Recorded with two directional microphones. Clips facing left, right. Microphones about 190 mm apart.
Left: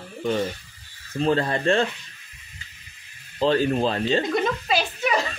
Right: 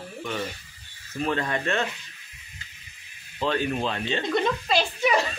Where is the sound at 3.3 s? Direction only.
35° left (ahead or behind).